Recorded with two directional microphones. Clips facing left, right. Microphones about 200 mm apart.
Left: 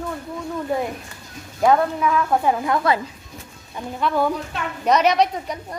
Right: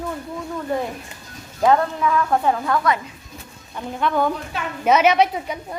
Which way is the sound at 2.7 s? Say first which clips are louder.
Even; 30° left (ahead or behind).